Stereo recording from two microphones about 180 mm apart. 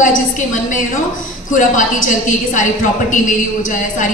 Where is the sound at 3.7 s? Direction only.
45° left (ahead or behind).